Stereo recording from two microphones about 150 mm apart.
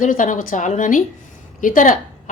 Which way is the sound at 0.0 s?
60° left (ahead or behind).